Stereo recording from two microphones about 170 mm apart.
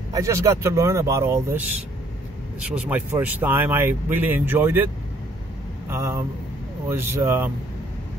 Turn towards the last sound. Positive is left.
turn(degrees=-15)  # may be behind; listen again after turning